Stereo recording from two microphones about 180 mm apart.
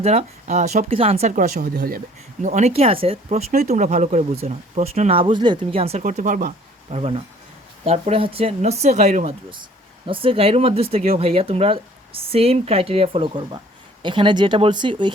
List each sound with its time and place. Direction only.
0.0 s speech: 40° right (ahead or behind)
1.4 s speech: 55° right (ahead or behind)
2.4 s speech: 40° right (ahead or behind)
6.9 s speech: 30° right (ahead or behind)